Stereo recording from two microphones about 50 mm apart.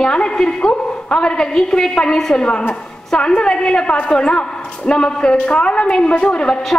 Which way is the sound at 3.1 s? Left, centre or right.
Centre.